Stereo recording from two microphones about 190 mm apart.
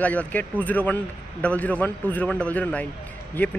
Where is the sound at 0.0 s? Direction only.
10° left (ahead or behind).